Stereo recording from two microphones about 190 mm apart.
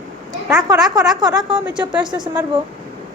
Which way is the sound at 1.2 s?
20° right (ahead or behind).